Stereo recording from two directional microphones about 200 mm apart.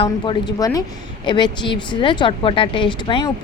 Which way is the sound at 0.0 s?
20° left (ahead or behind).